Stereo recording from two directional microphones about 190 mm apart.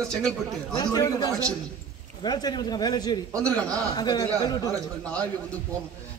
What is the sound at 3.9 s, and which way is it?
Speech, 20° left (ahead or behind).